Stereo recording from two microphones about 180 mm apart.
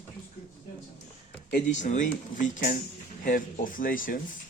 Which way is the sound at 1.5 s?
40° left (ahead or behind).